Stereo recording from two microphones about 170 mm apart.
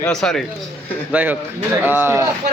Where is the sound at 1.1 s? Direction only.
10° right (ahead or behind).